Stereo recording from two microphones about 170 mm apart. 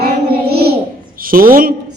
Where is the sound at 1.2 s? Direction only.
55° right (ahead or behind).